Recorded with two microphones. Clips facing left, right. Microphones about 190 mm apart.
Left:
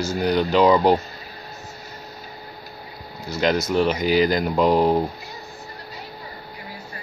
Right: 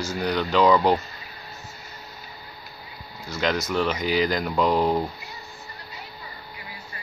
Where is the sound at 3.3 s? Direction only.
30° left (ahead or behind).